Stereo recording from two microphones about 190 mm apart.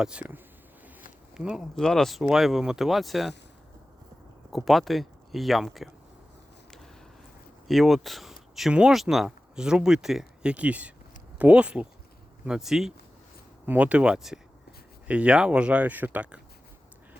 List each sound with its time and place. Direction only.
0.0 s speech: 5° right (ahead or behind)
4.5 s speech: centre (ahead or behind)
7.7 s speech: centre (ahead or behind)